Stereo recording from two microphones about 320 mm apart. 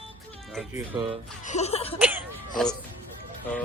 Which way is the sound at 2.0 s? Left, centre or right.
Centre.